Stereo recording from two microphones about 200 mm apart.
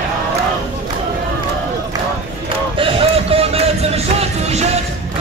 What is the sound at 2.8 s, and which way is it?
Music, 25° right (ahead or behind).